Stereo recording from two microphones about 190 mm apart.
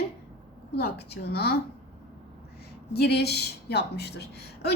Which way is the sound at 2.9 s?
60° left (ahead or behind).